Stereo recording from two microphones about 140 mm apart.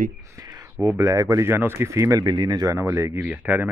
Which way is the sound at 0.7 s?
20° right (ahead or behind).